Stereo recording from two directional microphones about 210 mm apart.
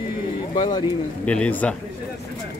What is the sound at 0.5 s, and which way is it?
Speech, 20° left (ahead or behind).